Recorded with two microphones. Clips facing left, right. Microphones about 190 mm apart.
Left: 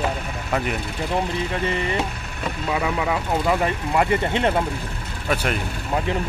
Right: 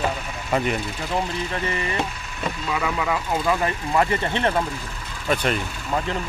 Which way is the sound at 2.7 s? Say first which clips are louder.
Left 2 dB; 20° left (ahead or behind).